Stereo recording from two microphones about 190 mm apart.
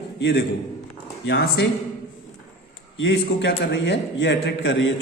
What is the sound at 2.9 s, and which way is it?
A man's voice, 75° left (ahead or behind).